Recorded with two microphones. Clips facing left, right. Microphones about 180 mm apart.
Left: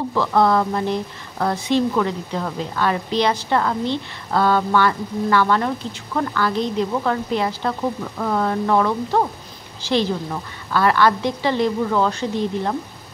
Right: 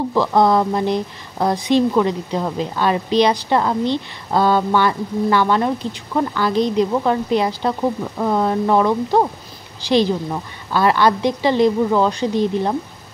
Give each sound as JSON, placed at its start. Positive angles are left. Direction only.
{"t": 0.1, "sound": "a woman's voice", "side_deg": -15}